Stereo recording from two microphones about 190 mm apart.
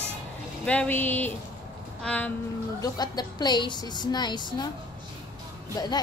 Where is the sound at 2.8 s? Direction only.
20° left (ahead or behind).